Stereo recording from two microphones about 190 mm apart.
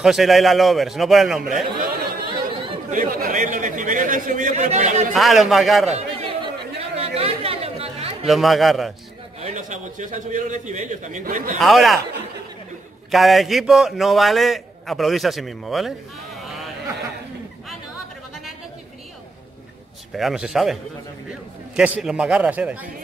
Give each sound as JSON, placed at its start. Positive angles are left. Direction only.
{"t": 0.0, "sound": "a man's voice", "side_deg": 0}
{"t": 2.2, "sound": "chatter", "side_deg": -25}
{"t": 2.9, "sound": "speech", "side_deg": -45}
{"t": 5.1, "sound": "a man's voice", "side_deg": 0}
{"t": 5.9, "sound": "chatter", "side_deg": -30}
{"t": 8.3, "sound": "a man's voice", "side_deg": 0}
{"t": 9.4, "sound": "a man's voice", "side_deg": -40}
{"t": 11.6, "sound": "a man's voice", "side_deg": 0}
{"t": 13.1, "sound": "a man's voice", "side_deg": 0}
{"t": 16.3, "sound": "a sound", "side_deg": 0}
{"t": 20.1, "sound": "a man's voice", "side_deg": 0}